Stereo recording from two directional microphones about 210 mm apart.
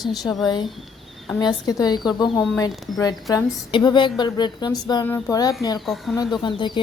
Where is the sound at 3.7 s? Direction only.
20° left (ahead or behind).